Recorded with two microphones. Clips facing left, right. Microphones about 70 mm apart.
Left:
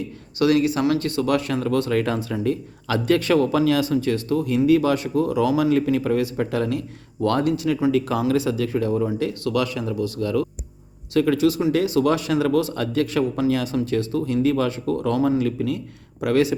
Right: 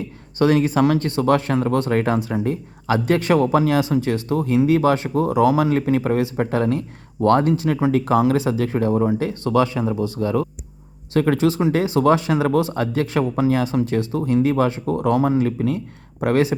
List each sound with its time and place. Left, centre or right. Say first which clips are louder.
0.3 s speech: right 2 dB; right